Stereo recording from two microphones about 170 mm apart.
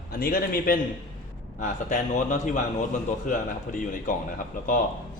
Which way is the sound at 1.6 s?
50° left (ahead or behind).